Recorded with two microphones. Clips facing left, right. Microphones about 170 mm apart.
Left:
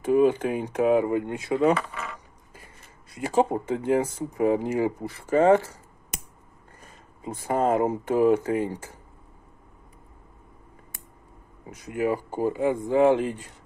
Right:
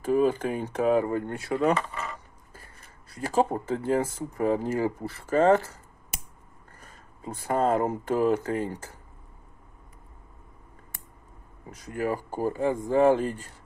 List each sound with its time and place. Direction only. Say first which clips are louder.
0.1 s speech: left 3 dB; 20° left (ahead or behind)
3.2 s speech: left 2 dB; 20° left (ahead or behind)
7.5 s speech: left 2 dB; 15° left (ahead or behind)
11.6 s speech: left 3 dB; 20° left (ahead or behind)